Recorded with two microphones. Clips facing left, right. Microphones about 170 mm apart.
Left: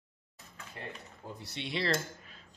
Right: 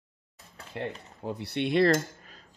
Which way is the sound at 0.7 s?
70° right (ahead or behind).